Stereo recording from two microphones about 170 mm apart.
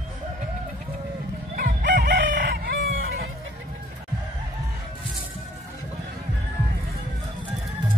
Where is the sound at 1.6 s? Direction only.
65° right (ahead or behind).